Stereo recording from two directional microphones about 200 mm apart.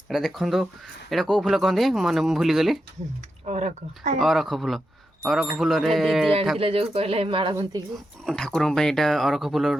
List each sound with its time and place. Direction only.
0.1 s speech: centre (ahead or behind)
3.4 s speech: 35° right (ahead or behind)
4.2 s speech: centre (ahead or behind)
6.6 s speech: 30° right (ahead or behind)
8.2 s speech: centre (ahead or behind)